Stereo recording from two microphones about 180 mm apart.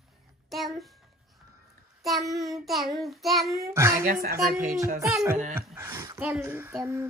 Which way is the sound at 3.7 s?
15° right (ahead or behind).